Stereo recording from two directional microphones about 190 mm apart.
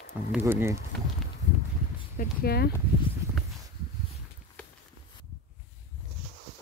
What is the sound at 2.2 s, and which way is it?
Speech, 55° left (ahead or behind).